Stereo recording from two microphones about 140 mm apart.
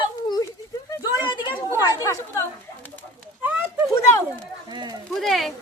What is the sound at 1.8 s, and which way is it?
Speech, 25° left (ahead or behind).